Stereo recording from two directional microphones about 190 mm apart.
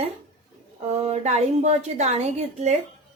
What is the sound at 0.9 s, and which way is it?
A woman's voice, 35° right (ahead or behind).